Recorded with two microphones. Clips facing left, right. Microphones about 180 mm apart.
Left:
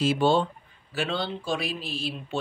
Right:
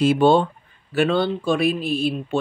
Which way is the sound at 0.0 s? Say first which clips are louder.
Right 7 dB; 60° right (ahead or behind).